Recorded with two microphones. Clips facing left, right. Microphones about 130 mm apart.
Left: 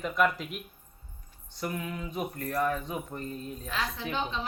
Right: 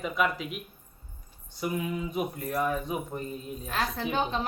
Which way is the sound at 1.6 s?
10° right (ahead or behind).